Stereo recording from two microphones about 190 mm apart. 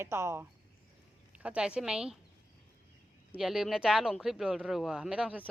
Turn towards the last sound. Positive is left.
turn(degrees=-5)  # may be behind; listen again after turning